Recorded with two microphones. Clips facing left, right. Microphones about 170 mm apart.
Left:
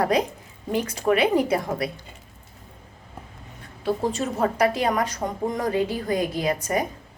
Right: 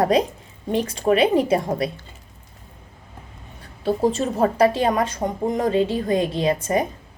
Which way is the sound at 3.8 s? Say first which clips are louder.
Right 4 dB; 30° right (ahead or behind).